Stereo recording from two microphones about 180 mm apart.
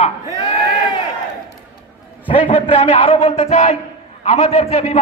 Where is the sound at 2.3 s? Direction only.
30° left (ahead or behind).